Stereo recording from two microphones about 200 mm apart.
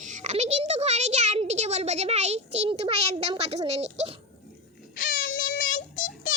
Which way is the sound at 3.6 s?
30° right (ahead or behind).